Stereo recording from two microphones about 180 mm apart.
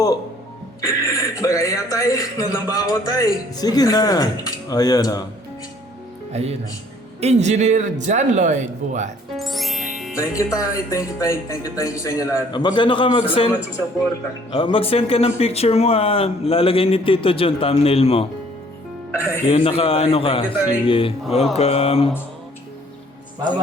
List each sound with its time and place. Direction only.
0.8 s a man's voice: 20° left (ahead or behind)
6.3 s a man's voice: 35° right (ahead or behind)
9.3 s music: centre (ahead or behind)
10.2 s speech: 20° left (ahead or behind)
14.5 s speech: 30° left (ahead or behind)
19.5 s speech: 30° left (ahead or behind)